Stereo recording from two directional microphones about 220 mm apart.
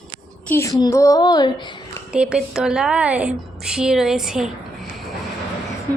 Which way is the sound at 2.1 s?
5° right (ahead or behind).